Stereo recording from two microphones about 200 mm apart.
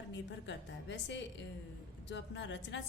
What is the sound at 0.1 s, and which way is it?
A woman's voice, 60° left (ahead or behind).